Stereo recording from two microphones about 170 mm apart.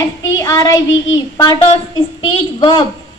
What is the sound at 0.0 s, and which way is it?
Speech, 20° left (ahead or behind).